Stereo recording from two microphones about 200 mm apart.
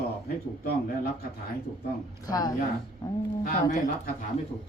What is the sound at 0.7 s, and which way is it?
Speech, 50° left (ahead or behind).